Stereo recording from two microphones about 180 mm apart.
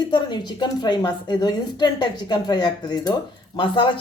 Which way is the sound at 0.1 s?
25° left (ahead or behind).